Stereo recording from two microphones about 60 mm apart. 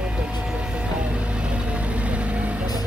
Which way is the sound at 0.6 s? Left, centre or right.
Centre.